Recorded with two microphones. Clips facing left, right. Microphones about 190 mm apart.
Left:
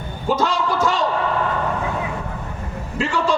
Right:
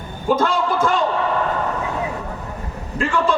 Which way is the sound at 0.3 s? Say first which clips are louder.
Even; 55° right (ahead or behind).